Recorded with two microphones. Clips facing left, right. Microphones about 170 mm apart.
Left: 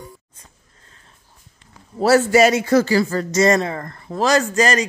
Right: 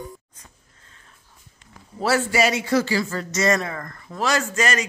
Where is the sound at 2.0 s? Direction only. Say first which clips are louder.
Left 7 dB; 40° left (ahead or behind).